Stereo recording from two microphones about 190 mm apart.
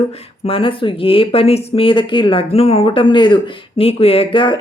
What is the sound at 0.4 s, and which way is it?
Speech, 30° left (ahead or behind).